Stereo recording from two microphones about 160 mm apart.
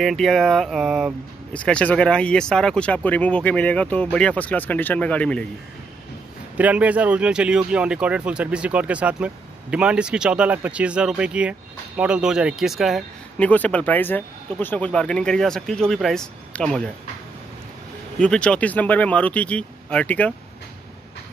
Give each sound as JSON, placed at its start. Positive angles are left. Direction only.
{"t": 0.0, "sound": "speech", "side_deg": 0}
{"t": 6.5, "sound": "speech", "side_deg": -10}
{"t": 13.4, "sound": "speech", "side_deg": 10}
{"t": 18.2, "sound": "speech", "side_deg": 5}